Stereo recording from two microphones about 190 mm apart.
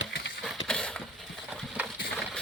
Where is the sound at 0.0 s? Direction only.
75° left (ahead or behind).